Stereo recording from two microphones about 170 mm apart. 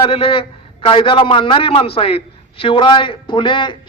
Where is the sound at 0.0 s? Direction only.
30° left (ahead or behind).